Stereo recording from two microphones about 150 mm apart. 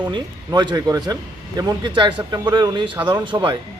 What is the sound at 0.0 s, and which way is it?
Speech, 30° right (ahead or behind).